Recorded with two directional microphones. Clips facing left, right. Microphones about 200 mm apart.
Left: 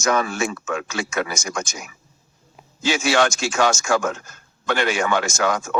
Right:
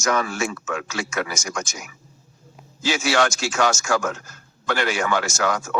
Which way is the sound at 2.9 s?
25° left (ahead or behind).